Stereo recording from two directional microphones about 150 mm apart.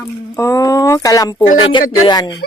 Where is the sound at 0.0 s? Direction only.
20° left (ahead or behind).